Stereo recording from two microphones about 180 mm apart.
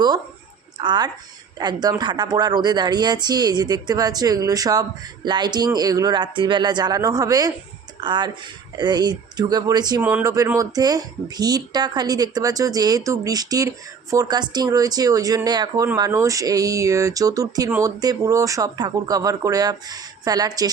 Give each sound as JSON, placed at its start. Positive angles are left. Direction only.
{"t": 0.8, "sound": "speech", "side_deg": -25}
{"t": 10.0, "sound": "speech", "side_deg": -10}